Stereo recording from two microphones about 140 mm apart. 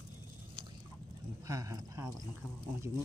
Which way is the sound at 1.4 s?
25° right (ahead or behind).